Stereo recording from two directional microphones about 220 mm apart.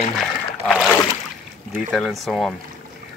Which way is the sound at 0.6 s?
Centre (ahead or behind).